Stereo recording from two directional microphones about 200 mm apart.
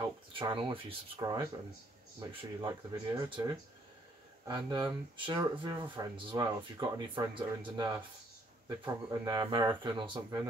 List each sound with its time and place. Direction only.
0.3 s speech: 25° right (ahead or behind)